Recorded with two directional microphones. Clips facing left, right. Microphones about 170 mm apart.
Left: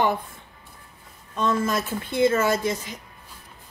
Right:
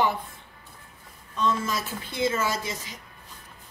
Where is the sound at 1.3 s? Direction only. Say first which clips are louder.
Left 3 dB; 50° left (ahead or behind).